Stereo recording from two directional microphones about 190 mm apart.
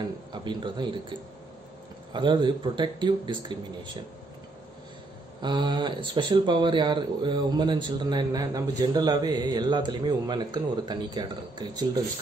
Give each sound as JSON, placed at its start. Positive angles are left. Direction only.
{"t": 0.3, "sound": "speech", "side_deg": -25}
{"t": 2.1, "sound": "speech", "side_deg": -25}
{"t": 5.4, "sound": "speech", "side_deg": -25}